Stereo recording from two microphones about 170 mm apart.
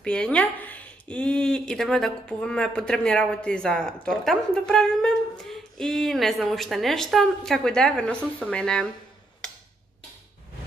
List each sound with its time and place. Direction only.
0.0 s speech: 5° left (ahead or behind)